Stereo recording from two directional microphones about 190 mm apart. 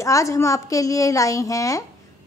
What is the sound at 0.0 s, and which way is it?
A woman's voice, 15° left (ahead or behind).